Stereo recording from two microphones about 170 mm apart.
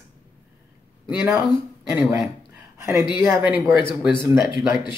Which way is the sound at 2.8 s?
15° right (ahead or behind).